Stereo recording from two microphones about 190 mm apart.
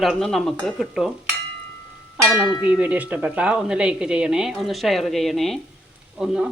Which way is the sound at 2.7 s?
5° right (ahead or behind).